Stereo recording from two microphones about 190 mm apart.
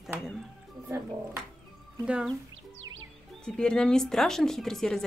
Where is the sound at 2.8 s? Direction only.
90° right.